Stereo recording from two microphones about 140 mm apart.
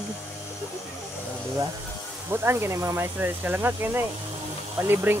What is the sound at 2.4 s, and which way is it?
Speech, 20° right (ahead or behind).